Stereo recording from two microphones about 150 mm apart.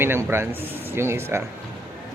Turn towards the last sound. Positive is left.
turn(degrees=-15)  # may be behind; listen again after turning